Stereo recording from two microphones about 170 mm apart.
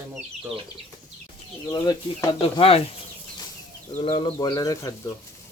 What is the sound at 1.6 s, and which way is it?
Speech, 20° left (ahead or behind).